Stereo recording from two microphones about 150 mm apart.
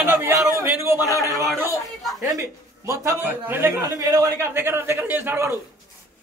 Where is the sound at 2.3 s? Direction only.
20° right (ahead or behind).